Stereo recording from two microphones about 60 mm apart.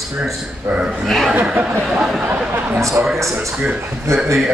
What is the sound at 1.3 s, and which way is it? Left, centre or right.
Speech, right.